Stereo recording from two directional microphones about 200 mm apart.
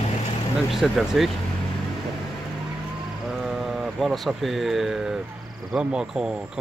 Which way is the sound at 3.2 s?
Centre (ahead or behind).